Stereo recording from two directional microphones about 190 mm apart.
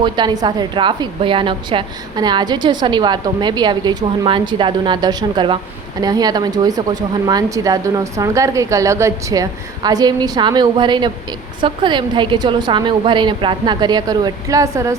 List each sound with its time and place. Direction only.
0.0 s a woman's voice: 20° right (ahead or behind)